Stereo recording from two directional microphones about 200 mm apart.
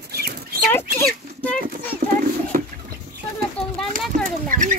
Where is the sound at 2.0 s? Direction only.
40° right (ahead or behind).